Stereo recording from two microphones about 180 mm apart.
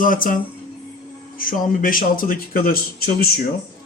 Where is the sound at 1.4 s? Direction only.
50° left (ahead or behind).